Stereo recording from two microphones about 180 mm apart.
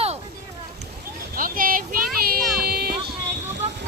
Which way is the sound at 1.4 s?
50° right (ahead or behind).